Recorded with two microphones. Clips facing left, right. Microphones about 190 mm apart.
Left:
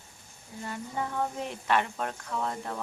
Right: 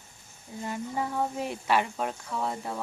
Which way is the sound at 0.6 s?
15° right (ahead or behind).